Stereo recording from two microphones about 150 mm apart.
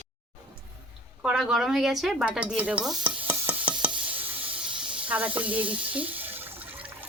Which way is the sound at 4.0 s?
10° right (ahead or behind).